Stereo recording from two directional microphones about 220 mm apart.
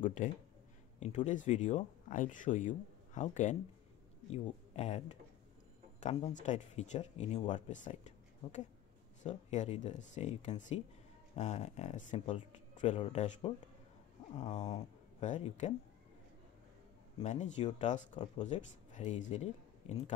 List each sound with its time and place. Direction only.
0.0 s speech: 35° left (ahead or behind)
17.2 s speech: 30° left (ahead or behind)